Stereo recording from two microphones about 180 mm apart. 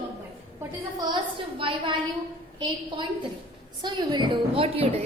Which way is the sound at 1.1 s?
30° right (ahead or behind).